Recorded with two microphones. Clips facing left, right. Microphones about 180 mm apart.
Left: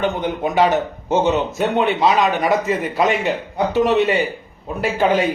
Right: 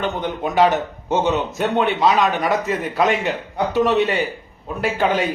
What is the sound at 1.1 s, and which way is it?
A man's voice, centre (ahead or behind).